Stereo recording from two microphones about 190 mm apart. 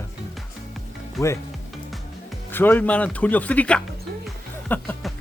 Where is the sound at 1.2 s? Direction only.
Centre (ahead or behind).